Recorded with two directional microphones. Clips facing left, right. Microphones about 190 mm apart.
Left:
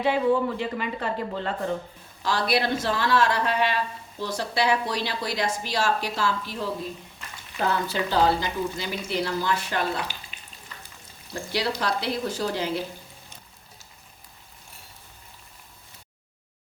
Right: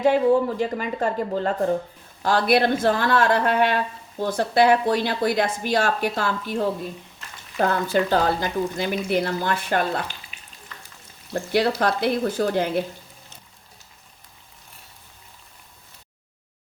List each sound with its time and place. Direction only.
0.0 s speech: 40° right (ahead or behind)
11.5 s speech: 55° right (ahead or behind)